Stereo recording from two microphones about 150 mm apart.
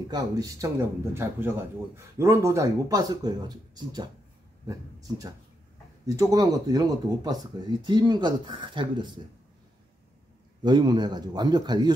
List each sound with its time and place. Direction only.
0.1 s speech: 25° right (ahead or behind)
6.0 s speech: 20° right (ahead or behind)
10.6 s speech: 30° right (ahead or behind)